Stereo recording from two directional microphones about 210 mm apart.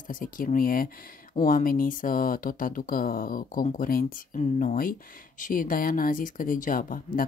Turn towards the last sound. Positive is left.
turn(degrees=40)  # may be behind; listen again after turning